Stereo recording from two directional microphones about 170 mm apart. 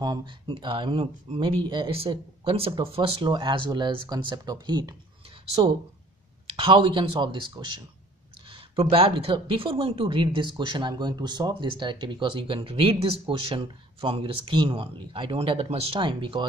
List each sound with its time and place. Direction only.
0.0 s speech: 25° right (ahead or behind)